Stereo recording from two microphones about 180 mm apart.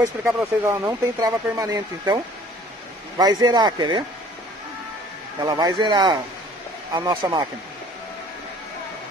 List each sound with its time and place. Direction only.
0.4 s speech: 15° right (ahead or behind)
3.2 s speech: 20° right (ahead or behind)
5.4 s speech: 20° right (ahead or behind)